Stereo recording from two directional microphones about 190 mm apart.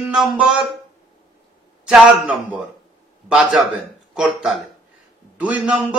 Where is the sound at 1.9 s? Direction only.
5° right (ahead or behind).